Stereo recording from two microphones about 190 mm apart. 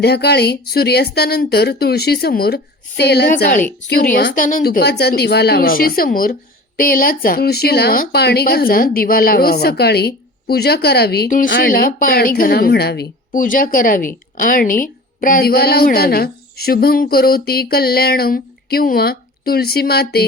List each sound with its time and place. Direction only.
0.0 s a woman's voice: 60° left (ahead or behind)